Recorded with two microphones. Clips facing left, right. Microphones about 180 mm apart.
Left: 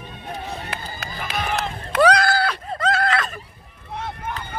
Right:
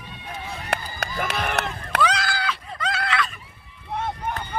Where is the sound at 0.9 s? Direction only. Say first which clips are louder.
Right 2 dB; 75° right (ahead or behind).